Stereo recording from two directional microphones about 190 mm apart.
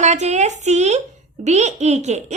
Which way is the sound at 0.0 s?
35° right (ahead or behind).